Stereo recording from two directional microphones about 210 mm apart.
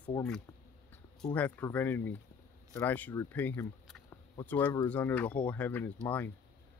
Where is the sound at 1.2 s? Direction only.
5° left (ahead or behind).